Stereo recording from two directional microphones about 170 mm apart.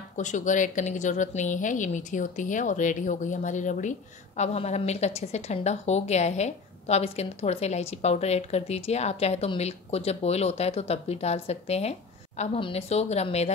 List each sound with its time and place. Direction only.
0.2 s a woman's voice: 45° left (ahead or behind)